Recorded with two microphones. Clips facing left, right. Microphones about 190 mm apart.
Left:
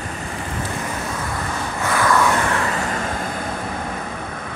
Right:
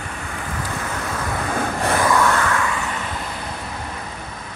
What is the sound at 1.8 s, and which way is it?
Vehicle, 30° right (ahead or behind).